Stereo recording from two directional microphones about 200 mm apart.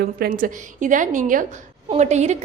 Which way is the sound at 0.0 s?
50° right (ahead or behind).